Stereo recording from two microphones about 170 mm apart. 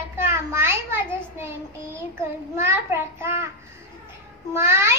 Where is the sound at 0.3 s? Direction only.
15° right (ahead or behind).